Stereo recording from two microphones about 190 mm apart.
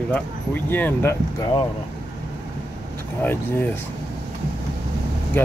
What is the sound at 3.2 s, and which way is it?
Speech, 10° left (ahead or behind).